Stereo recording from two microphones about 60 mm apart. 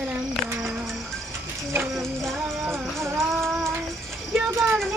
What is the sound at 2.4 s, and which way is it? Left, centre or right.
Music, right.